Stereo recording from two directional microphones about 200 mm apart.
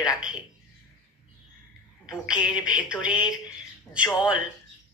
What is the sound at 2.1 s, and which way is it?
A woman's voice, 5° right (ahead or behind).